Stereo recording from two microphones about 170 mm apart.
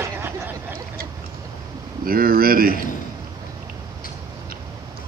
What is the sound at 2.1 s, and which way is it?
Speech, 60° right (ahead or behind).